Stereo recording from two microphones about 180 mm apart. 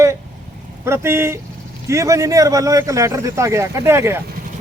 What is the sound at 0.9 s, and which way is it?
Speech, 15° right (ahead or behind).